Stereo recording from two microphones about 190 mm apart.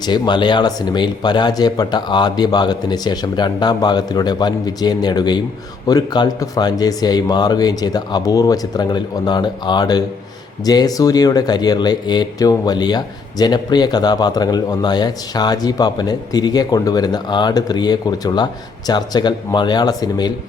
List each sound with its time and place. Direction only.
0.0 s speech: 25° left (ahead or behind)